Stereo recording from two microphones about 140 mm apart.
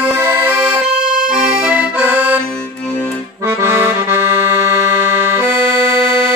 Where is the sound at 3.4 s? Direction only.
20° right (ahead or behind).